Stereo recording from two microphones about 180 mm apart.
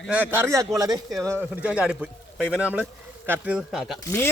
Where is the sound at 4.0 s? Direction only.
15° left (ahead or behind).